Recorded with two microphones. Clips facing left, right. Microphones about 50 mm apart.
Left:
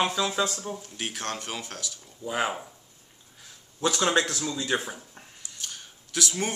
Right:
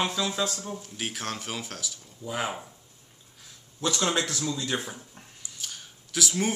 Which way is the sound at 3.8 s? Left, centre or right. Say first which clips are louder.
Left 3 dB; centre.